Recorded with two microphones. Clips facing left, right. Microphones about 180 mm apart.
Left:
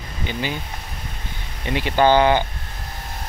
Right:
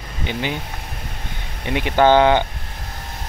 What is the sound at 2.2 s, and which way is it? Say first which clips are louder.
Speech: right 2 dB; 20° right (ahead or behind).